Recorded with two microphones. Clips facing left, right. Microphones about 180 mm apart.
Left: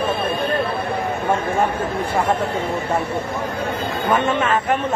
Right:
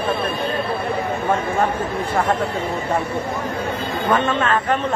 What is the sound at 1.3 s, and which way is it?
Speech, 10° left (ahead or behind).